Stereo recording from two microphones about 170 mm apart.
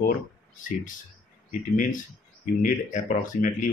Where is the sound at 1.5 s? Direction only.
50° left (ahead or behind).